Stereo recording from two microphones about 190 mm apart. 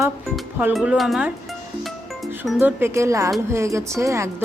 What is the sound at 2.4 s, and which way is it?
Speech, centre (ahead or behind).